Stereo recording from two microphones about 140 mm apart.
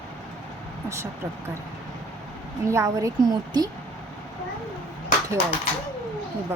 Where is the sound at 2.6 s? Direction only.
20° right (ahead or behind).